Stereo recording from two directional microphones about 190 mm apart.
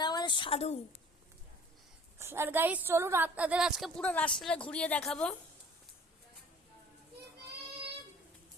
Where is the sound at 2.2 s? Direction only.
10° right (ahead or behind); by 5.4 s 5° left (ahead or behind).